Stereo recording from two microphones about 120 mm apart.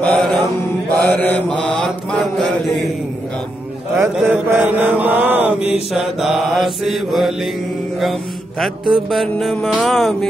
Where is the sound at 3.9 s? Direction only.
20° right (ahead or behind).